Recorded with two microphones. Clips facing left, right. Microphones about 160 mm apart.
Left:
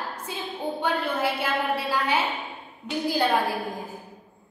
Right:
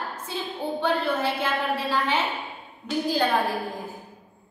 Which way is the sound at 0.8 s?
10° left (ahead or behind).